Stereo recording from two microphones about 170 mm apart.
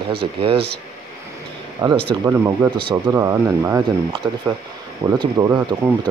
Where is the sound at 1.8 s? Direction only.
30° right (ahead or behind).